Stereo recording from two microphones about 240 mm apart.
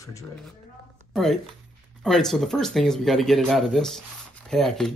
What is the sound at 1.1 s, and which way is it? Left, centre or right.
Speech, centre.